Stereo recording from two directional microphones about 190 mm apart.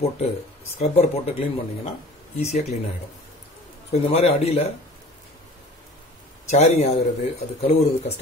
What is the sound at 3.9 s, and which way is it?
Speech, 35° left (ahead or behind).